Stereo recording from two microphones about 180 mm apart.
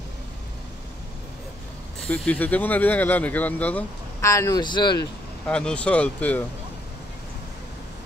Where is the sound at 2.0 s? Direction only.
5° left (ahead or behind); by 5.1 s 25° left (ahead or behind).